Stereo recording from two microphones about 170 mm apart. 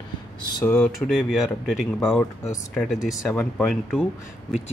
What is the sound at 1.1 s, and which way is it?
Speech, centre (ahead or behind).